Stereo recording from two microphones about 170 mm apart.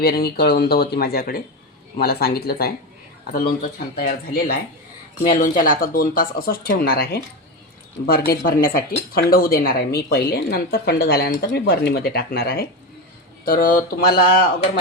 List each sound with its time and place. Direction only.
0.0 s speech: 70° left (ahead or behind)